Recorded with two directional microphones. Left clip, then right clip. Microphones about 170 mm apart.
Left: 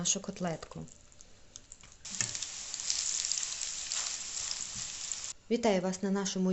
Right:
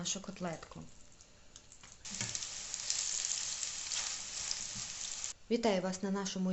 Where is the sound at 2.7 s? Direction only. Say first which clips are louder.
Left 3 dB; 15° left (ahead or behind).